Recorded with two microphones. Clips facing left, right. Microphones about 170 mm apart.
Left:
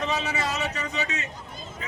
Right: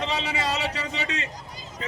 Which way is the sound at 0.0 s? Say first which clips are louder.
Even; 30° right (ahead or behind).